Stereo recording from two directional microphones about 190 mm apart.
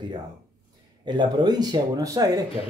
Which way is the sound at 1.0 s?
25° right (ahead or behind).